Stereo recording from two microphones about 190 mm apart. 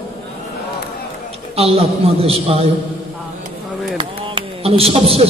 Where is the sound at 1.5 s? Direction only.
30° right (ahead or behind).